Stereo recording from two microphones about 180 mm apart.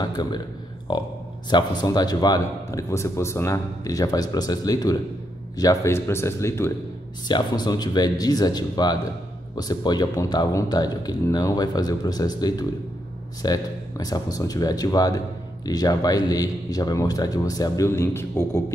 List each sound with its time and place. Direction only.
0.0 s speech: 25° left (ahead or behind)